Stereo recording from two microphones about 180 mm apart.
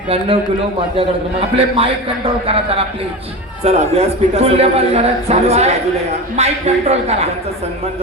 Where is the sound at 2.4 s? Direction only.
30° right (ahead or behind).